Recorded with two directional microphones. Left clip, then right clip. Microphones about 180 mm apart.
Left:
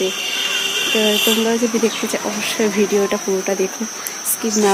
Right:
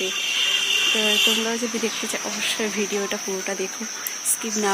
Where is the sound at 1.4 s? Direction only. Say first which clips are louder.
Left 8 dB; 5° left (ahead or behind).